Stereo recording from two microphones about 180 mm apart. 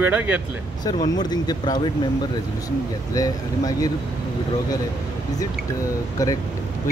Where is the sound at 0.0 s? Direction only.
10° right (ahead or behind).